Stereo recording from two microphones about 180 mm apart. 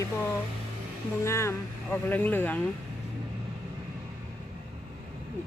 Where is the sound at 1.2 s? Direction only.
15° left (ahead or behind).